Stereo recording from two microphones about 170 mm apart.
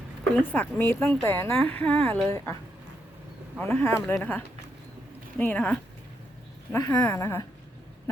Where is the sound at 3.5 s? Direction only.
10° left (ahead or behind).